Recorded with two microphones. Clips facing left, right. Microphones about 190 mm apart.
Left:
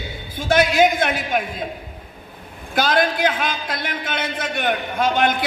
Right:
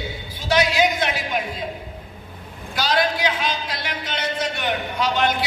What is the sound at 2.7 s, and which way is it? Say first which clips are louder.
A man's voice: left 3 dB; 50° left (ahead or behind).